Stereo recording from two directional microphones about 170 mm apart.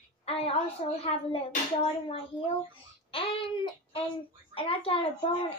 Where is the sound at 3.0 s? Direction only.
30° left (ahead or behind).